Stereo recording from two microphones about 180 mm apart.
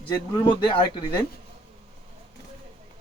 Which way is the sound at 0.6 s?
25° left (ahead or behind).